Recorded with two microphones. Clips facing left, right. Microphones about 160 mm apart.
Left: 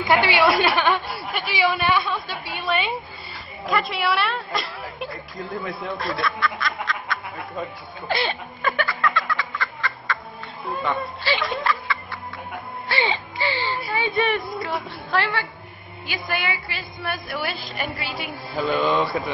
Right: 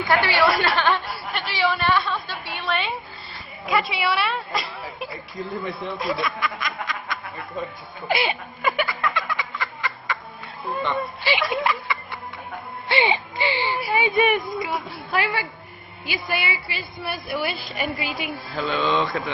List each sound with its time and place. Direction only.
0.1 s a woman's voice: 15° left (ahead or behind)
2.6 s a sound: centre (ahead or behind)
3.6 s speech: centre (ahead or behind)
5.9 s speech: 10° right (ahead or behind)
8.1 s a sound: 10° right (ahead or behind)
11.2 s a sound: 15° right (ahead or behind)
12.8 s speech: 20° right (ahead or behind)
16.3 s a woman's voice: 45° left (ahead or behind)
17.0 s speech: 5° right (ahead or behind)